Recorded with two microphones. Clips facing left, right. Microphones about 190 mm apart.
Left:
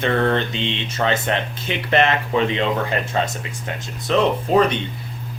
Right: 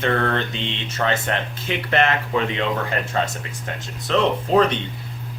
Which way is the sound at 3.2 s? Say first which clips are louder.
Left 1 dB; 20° left (ahead or behind).